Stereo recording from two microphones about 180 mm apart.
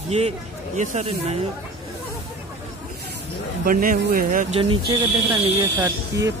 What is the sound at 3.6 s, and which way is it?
Speech, 50° right (ahead or behind).